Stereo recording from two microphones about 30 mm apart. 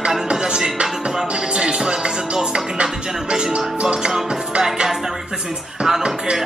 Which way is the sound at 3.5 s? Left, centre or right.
Right.